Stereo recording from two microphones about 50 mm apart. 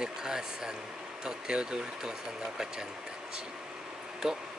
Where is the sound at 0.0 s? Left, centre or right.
Centre.